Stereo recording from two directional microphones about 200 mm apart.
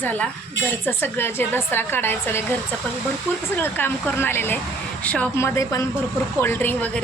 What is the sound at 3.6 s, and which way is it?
A woman's voice, 10° left (ahead or behind).